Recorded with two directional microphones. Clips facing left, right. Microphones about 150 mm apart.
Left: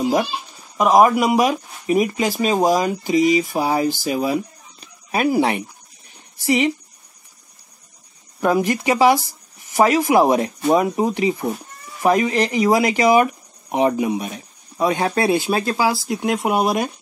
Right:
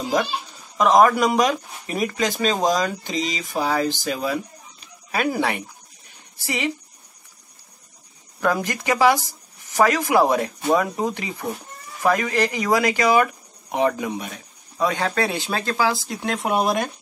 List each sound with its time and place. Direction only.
0.0 s a sound: 15° left (ahead or behind)
0.7 s speech: 15° left (ahead or behind)
1.4 s speech: 20° left (ahead or behind)
8.4 s speech: 20° left (ahead or behind)